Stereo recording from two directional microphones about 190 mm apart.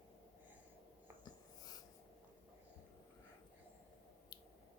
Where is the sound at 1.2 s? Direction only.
20° left (ahead or behind).